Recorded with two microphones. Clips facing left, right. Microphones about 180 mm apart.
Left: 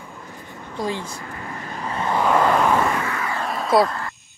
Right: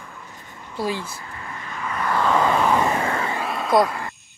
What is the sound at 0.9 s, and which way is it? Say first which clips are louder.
Speech: even; 20° left (ahead or behind).